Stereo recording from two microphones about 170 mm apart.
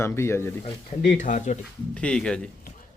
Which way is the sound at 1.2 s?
45° left (ahead or behind).